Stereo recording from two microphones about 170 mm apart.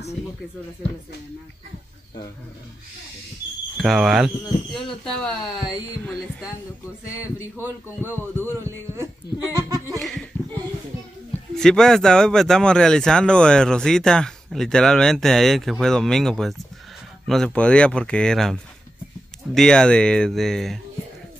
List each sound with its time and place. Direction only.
3.7 s speech: centre (ahead or behind)
7.5 s speech: 15° right (ahead or behind)
9.9 s speech: centre (ahead or behind)
11.5 s speech: 5° left (ahead or behind)